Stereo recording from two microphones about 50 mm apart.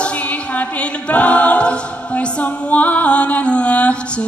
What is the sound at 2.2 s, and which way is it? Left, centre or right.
Music, left.